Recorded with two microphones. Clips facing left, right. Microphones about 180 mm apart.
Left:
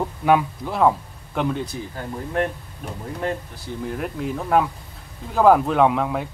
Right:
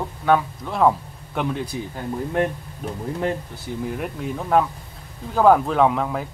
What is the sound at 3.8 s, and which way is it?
Speech, centre (ahead or behind).